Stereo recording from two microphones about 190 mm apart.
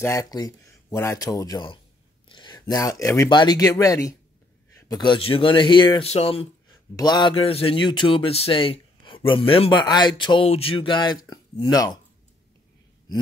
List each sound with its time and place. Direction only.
0.0 s speech: 15° left (ahead or behind)
2.2 s a sound: 25° left (ahead or behind)
2.6 s speech: 20° left (ahead or behind)